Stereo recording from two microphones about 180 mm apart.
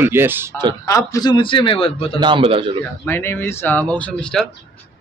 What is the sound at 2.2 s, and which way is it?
Speech, 30° right (ahead or behind).